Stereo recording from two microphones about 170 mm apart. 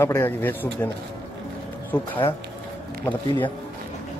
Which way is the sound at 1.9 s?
10° left (ahead or behind).